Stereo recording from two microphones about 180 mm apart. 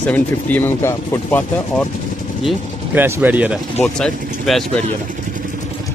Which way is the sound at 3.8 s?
5° left (ahead or behind).